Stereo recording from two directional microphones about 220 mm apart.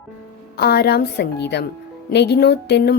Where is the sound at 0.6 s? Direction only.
45° left (ahead or behind).